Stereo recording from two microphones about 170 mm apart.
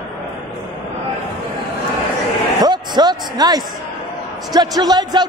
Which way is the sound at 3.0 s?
25° right (ahead or behind).